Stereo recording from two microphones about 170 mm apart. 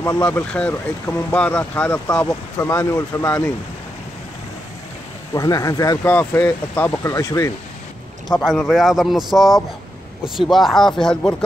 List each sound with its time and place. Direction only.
0.2 s speech: 5° left (ahead or behind)
5.3 s speech: 20° left (ahead or behind)
8.3 s speech: centre (ahead or behind)